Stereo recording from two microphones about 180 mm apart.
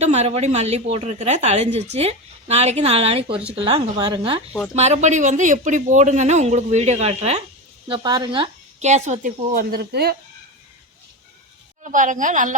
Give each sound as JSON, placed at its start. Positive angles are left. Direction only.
{"t": 0.0, "sound": "a woman's voice", "side_deg": -35}
{"t": 4.7, "sound": "a woman's voice", "side_deg": -40}
{"t": 7.9, "sound": "a woman's voice", "side_deg": -25}
{"t": 8.8, "sound": "a woman's voice", "side_deg": -40}
{"t": 11.9, "sound": "a woman's voice", "side_deg": -45}